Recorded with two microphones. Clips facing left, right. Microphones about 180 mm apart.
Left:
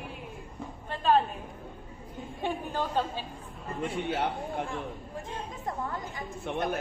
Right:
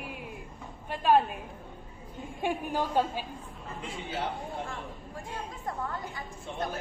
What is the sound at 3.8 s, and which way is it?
Speech, 65° left (ahead or behind).